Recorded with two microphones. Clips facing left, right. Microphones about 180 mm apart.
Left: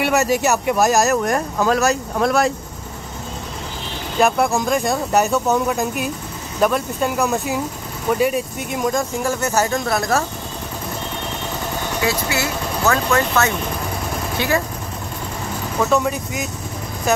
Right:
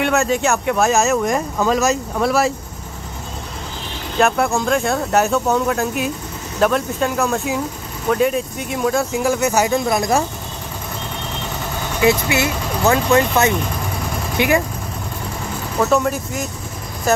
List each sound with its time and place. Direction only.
0.0 s speech: 5° left (ahead or behind)
4.2 s speech: centre (ahead or behind); by 10.2 s 15° right (ahead or behind)
12.0 s speech: 20° right (ahead or behind)
15.8 s speech: centre (ahead or behind)